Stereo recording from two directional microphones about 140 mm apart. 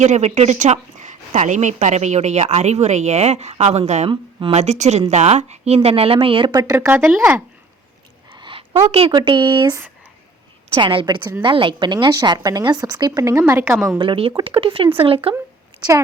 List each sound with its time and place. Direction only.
0.0 s a woman's voice: 55° right (ahead or behind)
4.1 s speech: 35° right (ahead or behind)
4.5 s a woman's voice: 55° right (ahead or behind)
6.6 s speech: 20° right (ahead or behind)
8.3 s speech: 35° right (ahead or behind)
10.8 s a woman's voice: 35° right (ahead or behind); by 13.7 s 15° right (ahead or behind)
14.0 s speech: 40° right (ahead or behind)